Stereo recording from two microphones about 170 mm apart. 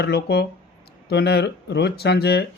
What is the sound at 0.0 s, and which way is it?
Speech, 75° left (ahead or behind).